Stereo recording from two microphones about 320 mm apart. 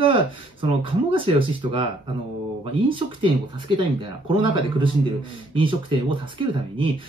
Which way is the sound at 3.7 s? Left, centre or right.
Centre.